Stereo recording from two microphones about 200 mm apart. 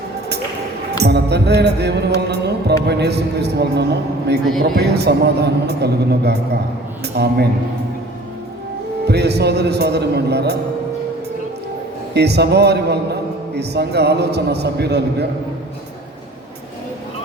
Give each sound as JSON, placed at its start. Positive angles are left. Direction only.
{"t": 0.9, "sound": "music", "side_deg": -55}
{"t": 2.2, "sound": "a man's voice", "side_deg": -55}
{"t": 9.0, "sound": "a man's voice", "side_deg": -55}
{"t": 12.1, "sound": "a man's voice", "side_deg": -55}